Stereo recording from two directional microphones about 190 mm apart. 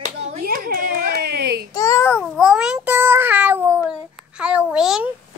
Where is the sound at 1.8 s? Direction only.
15° left (ahead or behind); by 5.1 s 5° right (ahead or behind).